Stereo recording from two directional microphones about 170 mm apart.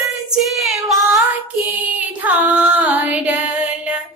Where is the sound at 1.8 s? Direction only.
10° right (ahead or behind).